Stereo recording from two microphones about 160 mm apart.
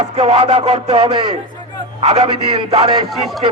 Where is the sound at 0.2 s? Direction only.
35° right (ahead or behind).